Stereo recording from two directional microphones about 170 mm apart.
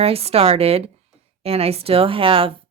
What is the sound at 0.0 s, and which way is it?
Speech, 35° right (ahead or behind).